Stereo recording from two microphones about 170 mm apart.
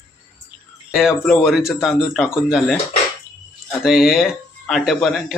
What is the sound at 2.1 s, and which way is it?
Speech, 10° left (ahead or behind).